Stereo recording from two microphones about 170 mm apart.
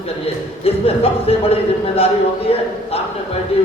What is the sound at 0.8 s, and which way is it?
Speech, 35° left (ahead or behind).